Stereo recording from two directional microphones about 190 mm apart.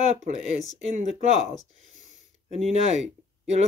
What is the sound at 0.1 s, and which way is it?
Speech, 35° right (ahead or behind).